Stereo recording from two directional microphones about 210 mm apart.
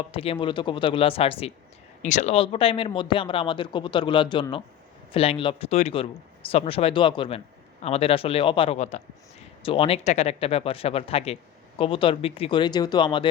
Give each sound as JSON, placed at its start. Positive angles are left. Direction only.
{"t": 0.1, "sound": "speech", "side_deg": 25}